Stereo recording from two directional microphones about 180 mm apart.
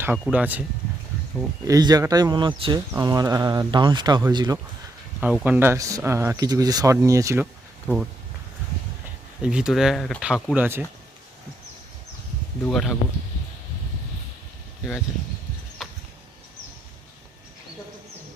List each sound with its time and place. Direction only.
0.0 s speech: 10° right (ahead or behind)
1.4 s speech: 20° right (ahead or behind)
5.2 s speech: 10° right (ahead or behind)
9.4 s speech: 5° right (ahead or behind)
12.6 s speech: centre (ahead or behind)
15.8 s a sound: centre (ahead or behind)